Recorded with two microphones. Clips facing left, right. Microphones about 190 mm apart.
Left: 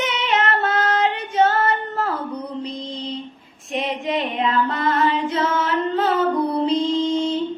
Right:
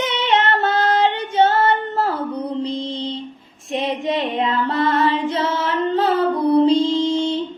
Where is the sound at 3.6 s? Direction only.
30° right (ahead or behind).